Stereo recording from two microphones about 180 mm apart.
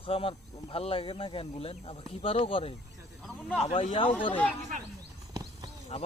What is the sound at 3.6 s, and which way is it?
Speech, 35° left (ahead or behind).